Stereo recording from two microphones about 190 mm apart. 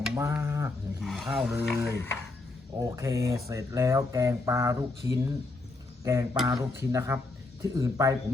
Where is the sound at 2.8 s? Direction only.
15° right (ahead or behind).